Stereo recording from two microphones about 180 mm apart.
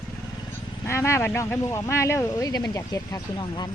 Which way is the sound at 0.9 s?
15° left (ahead or behind).